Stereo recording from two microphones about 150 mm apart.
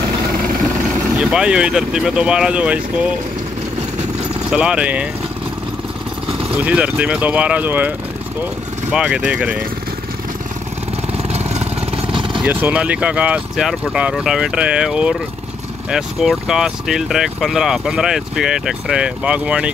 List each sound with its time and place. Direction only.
1.3 s speech: 5° right (ahead or behind)
4.5 s speech: 5° right (ahead or behind)
6.6 s speech: 10° right (ahead or behind)
8.9 s speech: 5° right (ahead or behind)
12.1 s vehicle: 35° right (ahead or behind)
12.4 s speech: 10° right (ahead or behind)